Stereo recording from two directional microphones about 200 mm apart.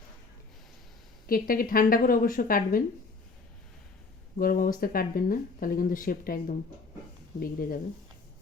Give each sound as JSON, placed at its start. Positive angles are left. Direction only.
{"t": 1.3, "sound": "speech", "side_deg": 45}
{"t": 4.4, "sound": "speech", "side_deg": 45}